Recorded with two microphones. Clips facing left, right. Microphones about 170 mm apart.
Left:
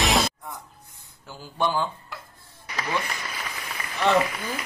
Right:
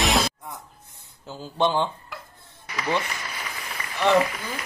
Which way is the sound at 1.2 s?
20° right (ahead or behind).